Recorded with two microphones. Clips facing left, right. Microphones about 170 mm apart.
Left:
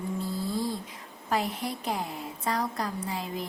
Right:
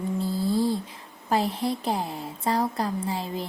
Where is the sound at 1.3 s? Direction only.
30° right (ahead or behind).